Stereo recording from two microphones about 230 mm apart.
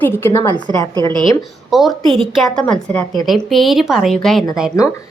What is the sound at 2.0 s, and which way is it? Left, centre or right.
Speech, right.